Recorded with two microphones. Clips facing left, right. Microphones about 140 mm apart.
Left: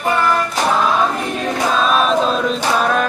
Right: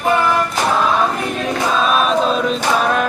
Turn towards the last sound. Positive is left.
turn(degrees=0)  # may be behind; listen again after turning